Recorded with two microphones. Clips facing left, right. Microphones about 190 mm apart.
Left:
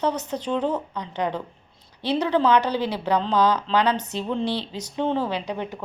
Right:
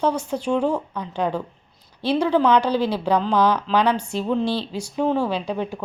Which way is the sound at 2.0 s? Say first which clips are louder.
Right 2 dB; 10° right (ahead or behind).